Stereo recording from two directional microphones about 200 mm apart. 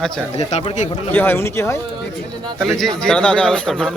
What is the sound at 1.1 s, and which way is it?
Speech, 10° left (ahead or behind).